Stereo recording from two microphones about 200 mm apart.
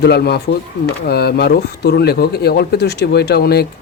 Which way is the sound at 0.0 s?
55° left (ahead or behind).